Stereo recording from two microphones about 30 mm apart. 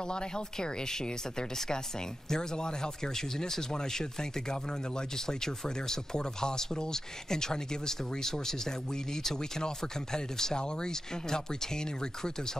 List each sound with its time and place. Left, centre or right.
0.1 s speech: left
2.2 s speech: left